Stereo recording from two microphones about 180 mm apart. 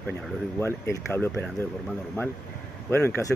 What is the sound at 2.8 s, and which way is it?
Speech, 15° left (ahead or behind).